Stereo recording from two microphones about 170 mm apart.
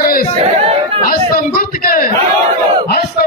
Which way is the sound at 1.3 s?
55° left (ahead or behind).